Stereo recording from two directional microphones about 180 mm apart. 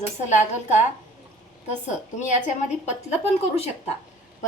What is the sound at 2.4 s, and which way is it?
A woman's voice, 35° left (ahead or behind).